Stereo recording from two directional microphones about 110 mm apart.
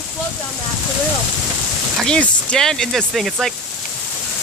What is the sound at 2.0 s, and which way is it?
Speech, 10° left (ahead or behind).